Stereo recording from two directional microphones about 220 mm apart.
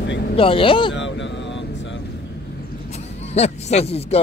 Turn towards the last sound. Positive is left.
turn(degrees=25)  # may be behind; listen again after turning